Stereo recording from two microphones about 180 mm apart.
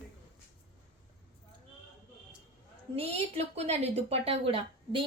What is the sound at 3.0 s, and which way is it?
A woman's voice, 35° right (ahead or behind).